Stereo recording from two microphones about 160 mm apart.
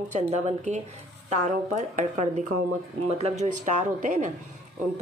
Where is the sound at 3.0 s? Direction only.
45° right (ahead or behind).